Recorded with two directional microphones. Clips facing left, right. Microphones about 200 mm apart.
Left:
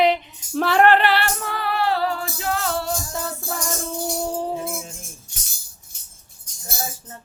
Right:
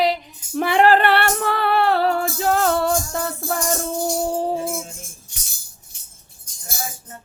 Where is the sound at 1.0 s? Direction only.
60° right (ahead or behind).